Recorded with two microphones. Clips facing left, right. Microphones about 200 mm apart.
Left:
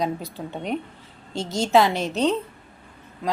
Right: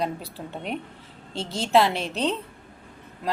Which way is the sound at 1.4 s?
30° right (ahead or behind).